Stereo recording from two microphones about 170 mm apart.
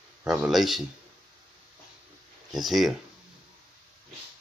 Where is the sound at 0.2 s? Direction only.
5° right (ahead or behind).